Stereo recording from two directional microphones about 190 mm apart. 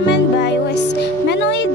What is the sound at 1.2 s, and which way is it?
Speech, 70° left (ahead or behind).